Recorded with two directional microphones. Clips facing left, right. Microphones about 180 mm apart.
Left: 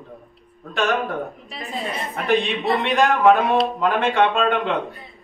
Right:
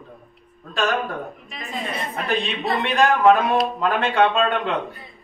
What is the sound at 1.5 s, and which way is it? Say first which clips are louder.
Speech: left 1 dB; 35° left (ahead or behind).